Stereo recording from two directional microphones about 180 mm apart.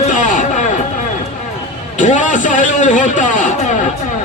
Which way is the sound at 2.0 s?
45° left (ahead or behind).